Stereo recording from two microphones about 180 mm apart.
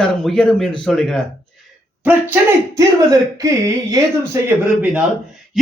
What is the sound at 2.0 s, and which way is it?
Speech, 15° right (ahead or behind).